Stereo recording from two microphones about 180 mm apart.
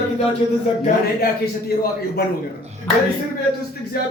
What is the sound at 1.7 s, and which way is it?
Speech, 60° left (ahead or behind).